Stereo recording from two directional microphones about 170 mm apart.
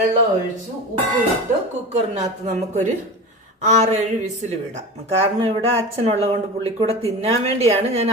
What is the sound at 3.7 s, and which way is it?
A woman's voice, 40° right (ahead or behind).